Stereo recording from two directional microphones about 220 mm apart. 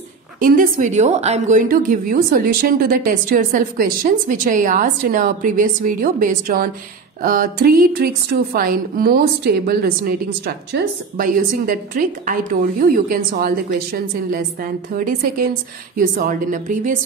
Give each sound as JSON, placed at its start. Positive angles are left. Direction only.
{"t": 0.4, "sound": "a woman's voice", "side_deg": -40}